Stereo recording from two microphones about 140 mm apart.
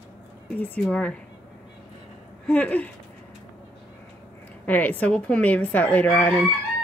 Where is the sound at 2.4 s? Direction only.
10° left (ahead or behind).